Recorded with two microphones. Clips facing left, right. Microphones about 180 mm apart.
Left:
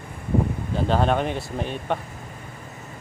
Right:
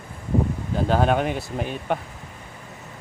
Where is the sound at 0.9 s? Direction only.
5° right (ahead or behind).